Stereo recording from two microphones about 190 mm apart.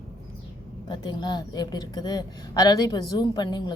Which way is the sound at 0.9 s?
25° left (ahead or behind).